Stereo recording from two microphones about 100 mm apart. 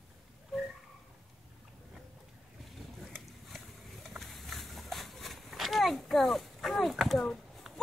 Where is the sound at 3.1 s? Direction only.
Centre (ahead or behind).